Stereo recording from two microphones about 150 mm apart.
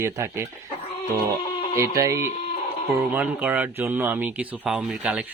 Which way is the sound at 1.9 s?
20° right (ahead or behind).